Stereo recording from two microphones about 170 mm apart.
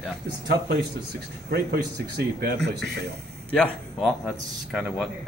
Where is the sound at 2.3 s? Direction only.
75° right (ahead or behind).